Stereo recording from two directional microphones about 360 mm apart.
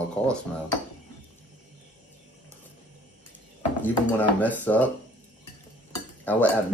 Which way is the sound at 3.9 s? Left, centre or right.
Centre.